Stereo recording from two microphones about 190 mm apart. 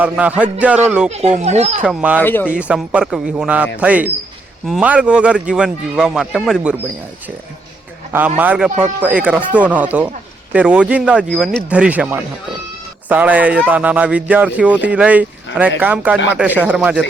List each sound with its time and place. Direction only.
0.0 s a man's voice: 5° right (ahead or behind)
1.1 s speech: 35° right (ahead or behind)
1.8 s speech: 5° right (ahead or behind)
2.2 s speech: 10° left (ahead or behind)
2.5 s a man's voice: 5° right (ahead or behind)
8.4 s speech: 5° right (ahead or behind)